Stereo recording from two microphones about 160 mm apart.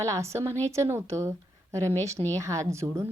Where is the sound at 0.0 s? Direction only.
20° right (ahead or behind).